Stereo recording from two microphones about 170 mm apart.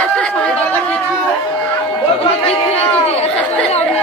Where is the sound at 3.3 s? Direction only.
5° left (ahead or behind).